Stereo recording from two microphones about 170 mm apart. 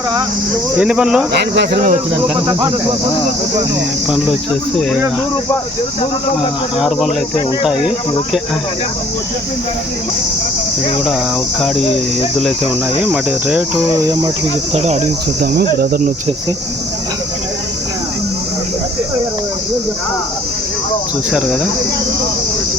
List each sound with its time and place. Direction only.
0.8 s speech: 5° right (ahead or behind)
1.3 s speech: 75° right (ahead or behind)
2.5 s speech: 20° right (ahead or behind)
6.7 s speech: centre (ahead or behind)
13.1 s cricket: 10° right (ahead or behind)
14.0 s speech: 25° right (ahead or behind)
14.8 s cricket: 40° right (ahead or behind)
15.4 s speech: 70° right (ahead or behind)